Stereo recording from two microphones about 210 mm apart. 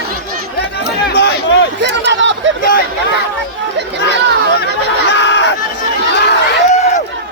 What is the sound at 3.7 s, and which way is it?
Chatter, 55° right (ahead or behind).